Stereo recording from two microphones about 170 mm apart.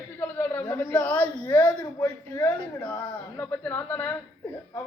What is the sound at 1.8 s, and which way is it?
A man's voice, 20° left (ahead or behind).